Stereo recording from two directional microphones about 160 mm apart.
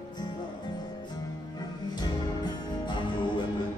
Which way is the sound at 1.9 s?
25° left (ahead or behind).